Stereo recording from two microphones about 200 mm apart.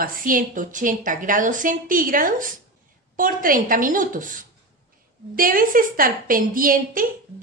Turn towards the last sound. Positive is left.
turn(degrees=-45)  # may be behind; listen again after turning